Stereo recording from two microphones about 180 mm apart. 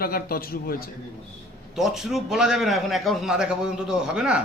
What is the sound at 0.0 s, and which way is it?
Speech, 55° left (ahead or behind).